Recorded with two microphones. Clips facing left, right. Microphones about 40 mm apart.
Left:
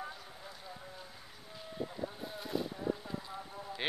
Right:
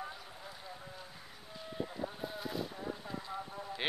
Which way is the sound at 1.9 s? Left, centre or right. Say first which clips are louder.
Right 1 dB; centre.